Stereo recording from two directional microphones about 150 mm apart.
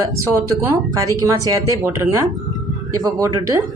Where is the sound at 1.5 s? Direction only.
20° right (ahead or behind).